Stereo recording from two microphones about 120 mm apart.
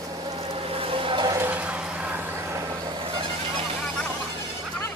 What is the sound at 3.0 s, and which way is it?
Music, 45° right (ahead or behind).